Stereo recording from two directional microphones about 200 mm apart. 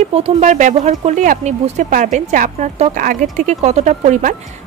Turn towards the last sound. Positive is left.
turn(degrees=-40)  # may be behind; listen again after turning